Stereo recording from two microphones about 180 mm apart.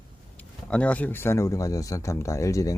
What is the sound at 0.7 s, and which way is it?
Speech, 5° left (ahead or behind).